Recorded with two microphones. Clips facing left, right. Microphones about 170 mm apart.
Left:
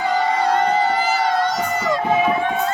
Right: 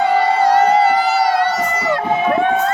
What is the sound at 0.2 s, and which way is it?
Crowd, 70° right (ahead or behind).